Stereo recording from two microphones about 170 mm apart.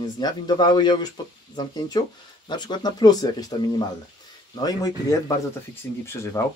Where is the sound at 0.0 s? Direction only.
25° left (ahead or behind).